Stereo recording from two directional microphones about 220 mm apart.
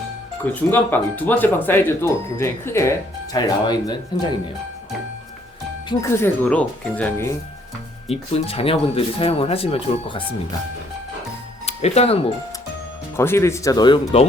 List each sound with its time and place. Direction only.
0.4 s speech: 10° left (ahead or behind)
5.9 s speech: 10° left (ahead or behind)
8.0 s speech: 25° left (ahead or behind)
11.6 s speech: 30° left (ahead or behind)
13.1 s speech: 10° left (ahead or behind)